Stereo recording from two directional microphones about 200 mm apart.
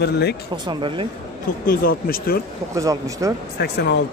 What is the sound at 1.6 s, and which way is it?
Speech, 45° left (ahead or behind).